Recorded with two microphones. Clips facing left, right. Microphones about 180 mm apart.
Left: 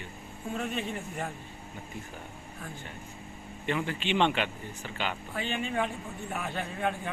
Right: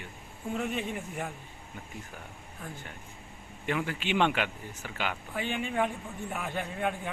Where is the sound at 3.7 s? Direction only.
10° right (ahead or behind).